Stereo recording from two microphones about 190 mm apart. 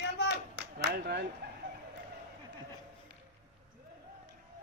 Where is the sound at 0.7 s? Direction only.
60° right (ahead or behind).